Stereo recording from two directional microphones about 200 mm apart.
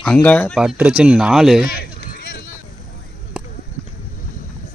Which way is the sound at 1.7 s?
50° left (ahead or behind).